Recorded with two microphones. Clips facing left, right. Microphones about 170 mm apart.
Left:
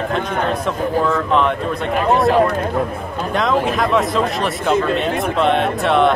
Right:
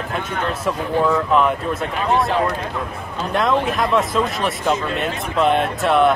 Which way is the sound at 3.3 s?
Centre (ahead or behind).